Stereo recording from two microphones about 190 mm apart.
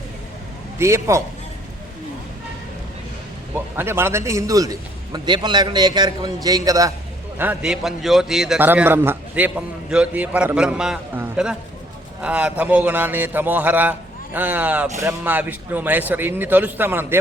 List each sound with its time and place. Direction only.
0.8 s a man's voice: 15° right (ahead or behind)
3.5 s a man's voice: 10° right (ahead or behind)
7.3 s a man's voice: 5° right (ahead or behind)